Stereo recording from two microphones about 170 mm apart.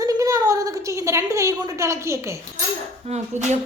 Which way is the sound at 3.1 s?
40° right (ahead or behind).